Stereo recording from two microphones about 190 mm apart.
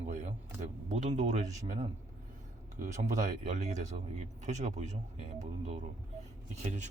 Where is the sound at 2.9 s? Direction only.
40° right (ahead or behind).